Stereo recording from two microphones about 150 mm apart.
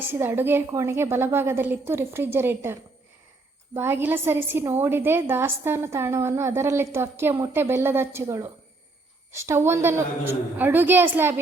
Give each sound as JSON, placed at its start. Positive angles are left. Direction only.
{"t": 0.1, "sound": "a woman's voice", "side_deg": -15}
{"t": 3.8, "sound": "a woman's voice", "side_deg": -15}